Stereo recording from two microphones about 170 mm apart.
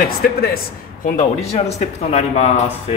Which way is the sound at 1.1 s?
40° left (ahead or behind).